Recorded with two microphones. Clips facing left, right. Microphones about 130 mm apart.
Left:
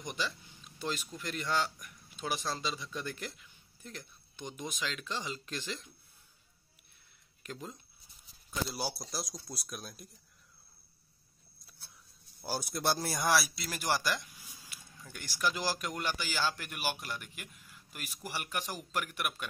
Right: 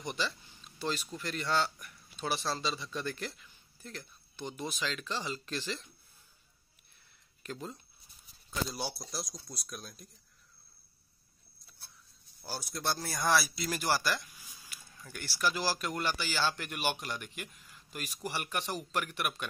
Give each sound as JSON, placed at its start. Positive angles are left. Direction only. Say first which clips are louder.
{"t": 0.7, "sound": "speech", "louder": "right 2 dB", "side_deg": 10}
{"t": 7.4, "sound": "speech", "louder": "right 2 dB", "side_deg": 10}
{"t": 12.4, "sound": "speech", "louder": "left 3 dB", "side_deg": 10}
{"t": 13.4, "sound": "speech", "louder": "right 3 dB", "side_deg": 0}
{"t": 13.9, "sound": "speech", "louder": "right 1 dB", "side_deg": 15}